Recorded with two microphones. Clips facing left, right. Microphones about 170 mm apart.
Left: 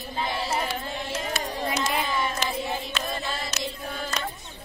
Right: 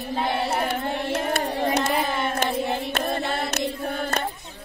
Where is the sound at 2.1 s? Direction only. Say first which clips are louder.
Right 3 dB; 60° right (ahead or behind).